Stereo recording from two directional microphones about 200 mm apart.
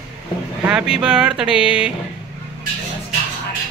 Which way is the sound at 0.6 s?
5° right (ahead or behind).